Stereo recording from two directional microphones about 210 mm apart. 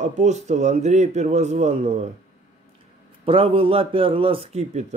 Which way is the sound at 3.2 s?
25° right (ahead or behind).